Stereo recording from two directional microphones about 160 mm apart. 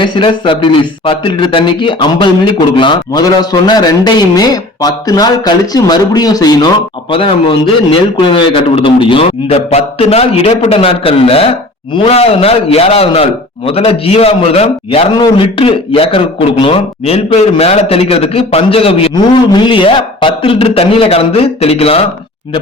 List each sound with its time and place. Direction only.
0.0 s a man's voice: 30° left (ahead or behind)